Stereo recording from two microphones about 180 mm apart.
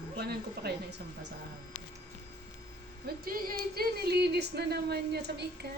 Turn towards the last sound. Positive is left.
turn(degrees=-65)  # may be behind; listen again after turning